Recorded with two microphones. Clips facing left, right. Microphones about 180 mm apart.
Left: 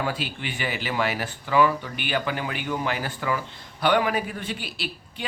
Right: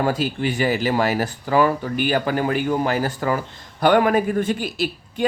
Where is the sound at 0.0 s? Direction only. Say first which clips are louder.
Right 8 dB; 40° right (ahead or behind).